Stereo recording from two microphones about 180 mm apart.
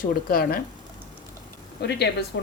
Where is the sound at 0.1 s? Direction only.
55° left (ahead or behind).